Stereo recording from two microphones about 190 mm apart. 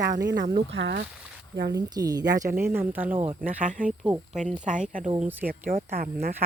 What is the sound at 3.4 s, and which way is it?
Speech, 45° right (ahead or behind).